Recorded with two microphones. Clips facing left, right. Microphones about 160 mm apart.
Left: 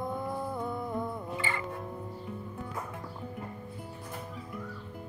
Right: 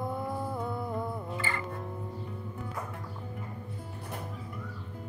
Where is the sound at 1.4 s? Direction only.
20° left (ahead or behind).